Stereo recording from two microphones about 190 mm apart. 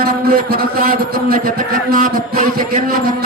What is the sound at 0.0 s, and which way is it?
A man's voice, 55° right (ahead or behind).